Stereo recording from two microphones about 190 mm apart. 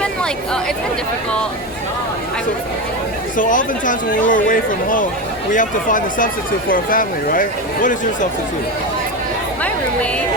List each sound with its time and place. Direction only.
0.0 s chatter: 5° left (ahead or behind)
3.3 s speech: 45° left (ahead or behind)